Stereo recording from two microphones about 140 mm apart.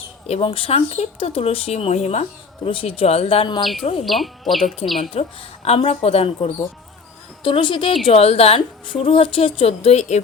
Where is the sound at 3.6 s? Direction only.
Centre (ahead or behind).